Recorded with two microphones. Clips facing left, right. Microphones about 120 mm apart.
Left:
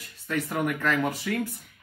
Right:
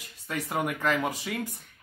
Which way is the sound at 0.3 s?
15° right (ahead or behind).